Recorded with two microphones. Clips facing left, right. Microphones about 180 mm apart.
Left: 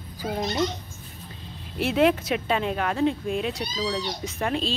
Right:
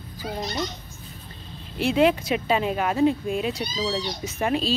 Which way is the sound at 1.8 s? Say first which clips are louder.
Right 1 dB; centre (ahead or behind).